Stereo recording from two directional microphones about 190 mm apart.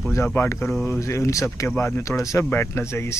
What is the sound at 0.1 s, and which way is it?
Speech, 15° left (ahead or behind).